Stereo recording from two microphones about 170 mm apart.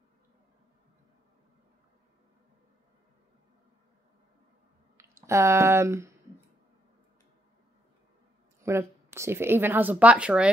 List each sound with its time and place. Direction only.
4.9 s speech: 15° right (ahead or behind)
8.5 s a woman's voice: 15° right (ahead or behind)